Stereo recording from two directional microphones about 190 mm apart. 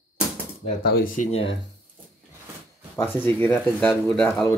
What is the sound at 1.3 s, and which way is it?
Speech, 30° left (ahead or behind).